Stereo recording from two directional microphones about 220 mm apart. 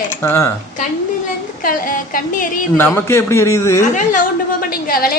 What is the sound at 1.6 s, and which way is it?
A woman's voice, 40° left (ahead or behind).